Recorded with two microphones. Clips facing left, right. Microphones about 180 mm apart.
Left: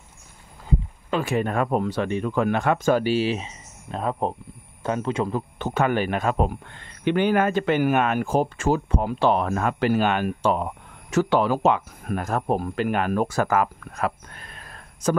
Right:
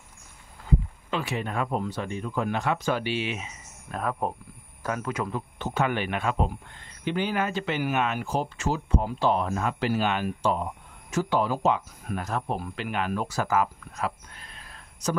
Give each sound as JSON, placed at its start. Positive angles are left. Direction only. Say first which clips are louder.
{"t": 1.1, "sound": "a man's voice", "louder": "left 6 dB", "side_deg": 50}
{"t": 5.6, "sound": "speech", "louder": "left 4 dB", "side_deg": 50}
{"t": 6.4, "sound": "speech", "louder": "left 4 dB", "side_deg": 65}